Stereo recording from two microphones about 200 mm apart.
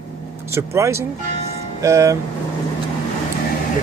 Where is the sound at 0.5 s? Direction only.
15° right (ahead or behind).